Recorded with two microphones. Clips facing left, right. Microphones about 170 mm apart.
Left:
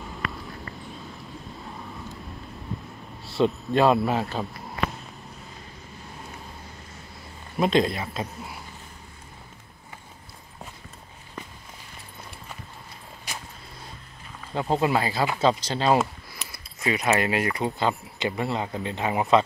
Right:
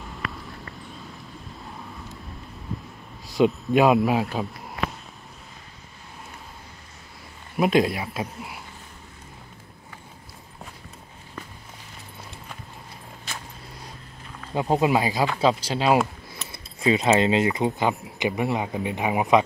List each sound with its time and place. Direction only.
0.0 s a sound: centre (ahead or behind)
2.7 s a sound: centre (ahead or behind)
3.4 s speech: 10° right (ahead or behind)
7.5 s speech: 10° right (ahead or behind)
14.5 s speech: 15° right (ahead or behind)
16.3 s speech: 25° right (ahead or behind)